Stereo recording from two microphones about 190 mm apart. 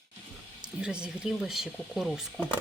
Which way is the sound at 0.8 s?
5° right (ahead or behind).